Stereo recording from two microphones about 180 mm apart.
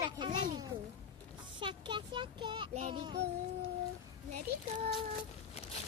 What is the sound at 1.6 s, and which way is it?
Speech, 25° right (ahead or behind).